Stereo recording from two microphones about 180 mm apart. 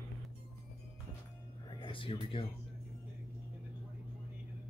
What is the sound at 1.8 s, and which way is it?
Speech, 30° left (ahead or behind).